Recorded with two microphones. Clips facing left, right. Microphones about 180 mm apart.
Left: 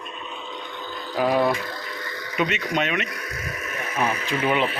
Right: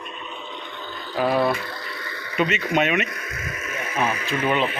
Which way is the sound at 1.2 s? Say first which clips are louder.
Even; 15° left (ahead or behind).